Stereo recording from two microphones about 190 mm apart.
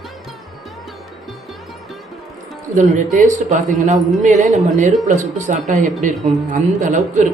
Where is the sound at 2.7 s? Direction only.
40° right (ahead or behind).